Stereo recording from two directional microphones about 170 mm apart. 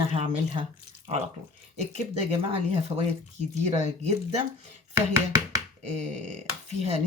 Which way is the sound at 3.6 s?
40° right (ahead or behind).